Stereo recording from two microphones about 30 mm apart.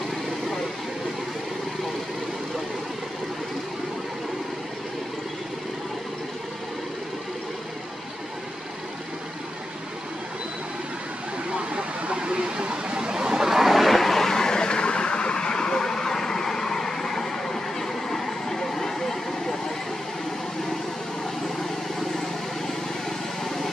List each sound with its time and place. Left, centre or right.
11.7 s a sound: right
13.1 s vehicle: right
13.5 s vehicle: centre
23.0 s vehicle: centre